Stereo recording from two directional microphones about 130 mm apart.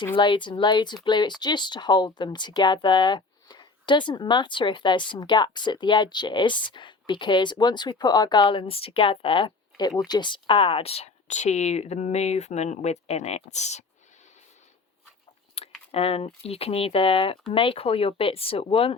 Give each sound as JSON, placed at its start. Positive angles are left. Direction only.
{"t": 0.0, "sound": "speech", "side_deg": 35}
{"t": 15.6, "sound": "a sound", "side_deg": 50}
{"t": 15.9, "sound": "speech", "side_deg": 50}